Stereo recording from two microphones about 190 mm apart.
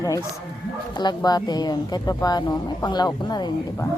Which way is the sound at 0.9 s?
20° left (ahead or behind).